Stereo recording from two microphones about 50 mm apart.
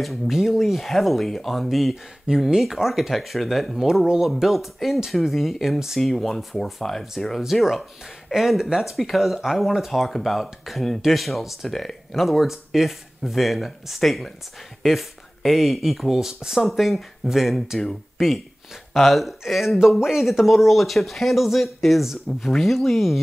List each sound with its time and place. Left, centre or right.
0.0 s speech: centre
2.3 s speech: centre
2.6 s speech: centre
18.1 s a sound: centre
18.9 s speech: centre